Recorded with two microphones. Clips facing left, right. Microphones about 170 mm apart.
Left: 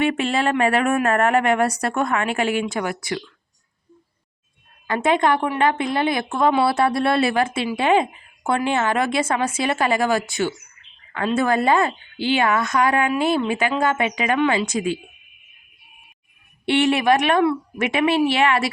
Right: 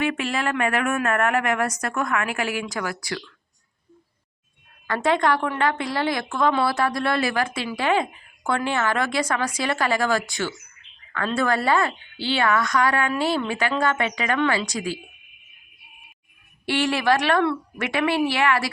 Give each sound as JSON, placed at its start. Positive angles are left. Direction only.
{"t": 0.0, "sound": "a woman's voice", "side_deg": 25}
{"t": 4.9, "sound": "a woman's voice", "side_deg": 20}
{"t": 16.6, "sound": "a woman's voice", "side_deg": 20}